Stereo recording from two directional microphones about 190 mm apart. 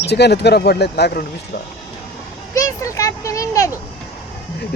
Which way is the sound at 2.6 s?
15° left (ahead or behind).